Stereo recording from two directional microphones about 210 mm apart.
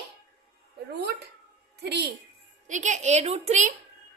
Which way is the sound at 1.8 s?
50° right (ahead or behind).